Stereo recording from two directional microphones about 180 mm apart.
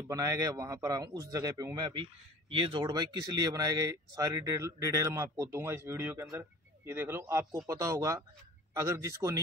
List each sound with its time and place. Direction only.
0.1 s a man's voice: 20° right (ahead or behind)